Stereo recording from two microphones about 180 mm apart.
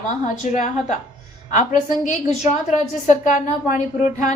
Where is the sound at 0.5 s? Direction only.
40° left (ahead or behind).